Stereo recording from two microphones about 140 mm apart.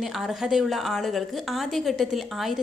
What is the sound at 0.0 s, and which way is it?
A woman's voice, 5° right (ahead or behind).